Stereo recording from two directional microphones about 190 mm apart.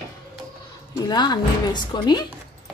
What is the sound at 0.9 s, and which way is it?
Speech, 20° left (ahead or behind).